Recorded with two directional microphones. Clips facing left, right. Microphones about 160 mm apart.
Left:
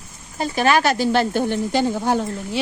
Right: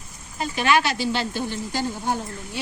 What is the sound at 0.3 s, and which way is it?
A woman's voice, 40° left (ahead or behind).